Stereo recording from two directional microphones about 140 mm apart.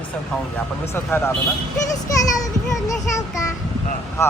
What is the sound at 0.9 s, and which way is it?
Speech, 15° left (ahead or behind).